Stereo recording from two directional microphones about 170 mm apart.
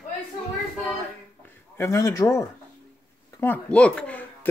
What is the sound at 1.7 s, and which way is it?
Speech, 15° left (ahead or behind).